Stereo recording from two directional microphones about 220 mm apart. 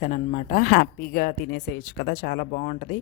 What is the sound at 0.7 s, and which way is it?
A man's voice, 40° left (ahead or behind).